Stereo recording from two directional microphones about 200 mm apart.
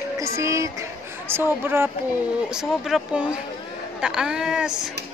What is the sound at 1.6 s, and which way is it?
A woman's voice, 10° right (ahead or behind).